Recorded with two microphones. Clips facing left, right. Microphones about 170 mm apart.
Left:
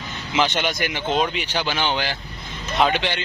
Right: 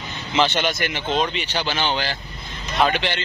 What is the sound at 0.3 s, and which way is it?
A man's voice, 10° left (ahead or behind).